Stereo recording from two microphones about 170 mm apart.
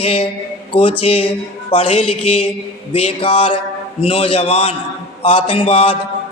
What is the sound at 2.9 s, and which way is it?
A woman's voice, 35° left (ahead or behind).